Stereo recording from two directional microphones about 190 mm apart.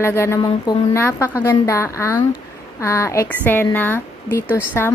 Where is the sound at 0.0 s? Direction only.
15° left (ahead or behind).